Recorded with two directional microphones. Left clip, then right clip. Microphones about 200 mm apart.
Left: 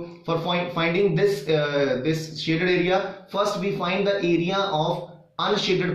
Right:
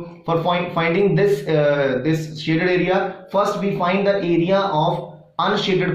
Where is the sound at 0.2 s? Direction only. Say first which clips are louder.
Right 5 dB; 20° right (ahead or behind).